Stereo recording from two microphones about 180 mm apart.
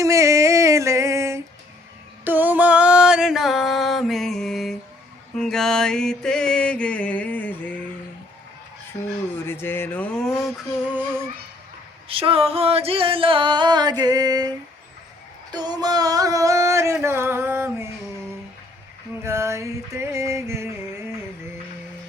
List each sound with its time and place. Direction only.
0.0 s music: 15° right (ahead or behind); by 7.5 s 10° left (ahead or behind)
8.9 s speech: 25° left (ahead or behind)
9.3 s music: 10° left (ahead or behind); by 11.2 s 10° right (ahead or behind)
12.0 s music: 30° right (ahead or behind)
15.5 s a sound: 25° right (ahead or behind)
19.2 s music: 15° right (ahead or behind)